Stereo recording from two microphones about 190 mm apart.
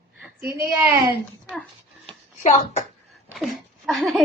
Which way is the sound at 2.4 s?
40° left (ahead or behind).